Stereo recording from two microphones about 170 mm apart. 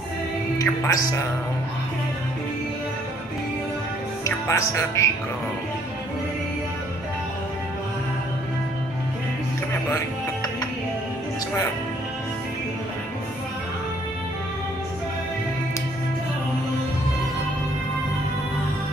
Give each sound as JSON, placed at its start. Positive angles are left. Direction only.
{"t": 0.6, "sound": "speech", "side_deg": 20}
{"t": 4.2, "sound": "speech", "side_deg": 15}